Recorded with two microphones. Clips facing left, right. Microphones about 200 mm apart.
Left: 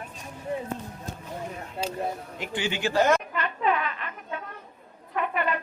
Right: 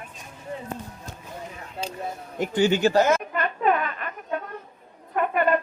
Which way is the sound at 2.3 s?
45° right (ahead or behind).